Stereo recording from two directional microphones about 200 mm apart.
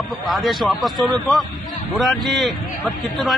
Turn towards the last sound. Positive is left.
turn(degrees=0)  # may be behind; listen again after turning